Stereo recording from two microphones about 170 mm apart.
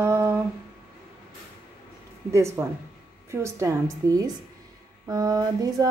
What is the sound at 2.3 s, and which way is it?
A woman's voice, 15° right (ahead or behind).